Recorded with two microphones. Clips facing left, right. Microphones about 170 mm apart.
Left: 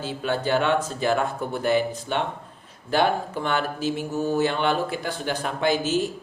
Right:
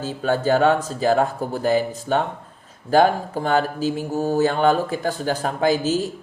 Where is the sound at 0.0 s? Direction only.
40° right (ahead or behind).